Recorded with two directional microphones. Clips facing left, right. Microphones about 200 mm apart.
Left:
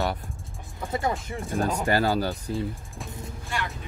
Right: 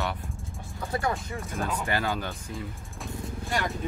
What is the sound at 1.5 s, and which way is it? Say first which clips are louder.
Speech: left 6 dB; 35° left (ahead or behind).